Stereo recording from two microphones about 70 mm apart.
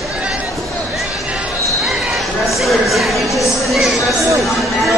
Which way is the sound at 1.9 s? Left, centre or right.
Centre.